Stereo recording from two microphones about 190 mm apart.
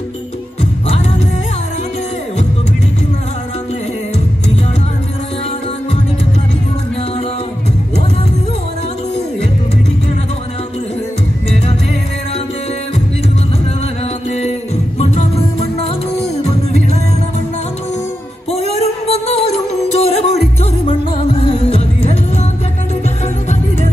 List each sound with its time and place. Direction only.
15.0 s music: 35° left (ahead or behind)
18.5 s music: 35° left (ahead or behind)